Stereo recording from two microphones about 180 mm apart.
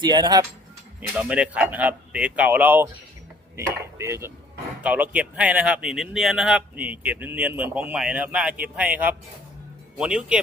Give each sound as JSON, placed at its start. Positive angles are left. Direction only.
{"t": 0.0, "sound": "speech", "side_deg": -25}
{"t": 1.1, "sound": "speech", "side_deg": -5}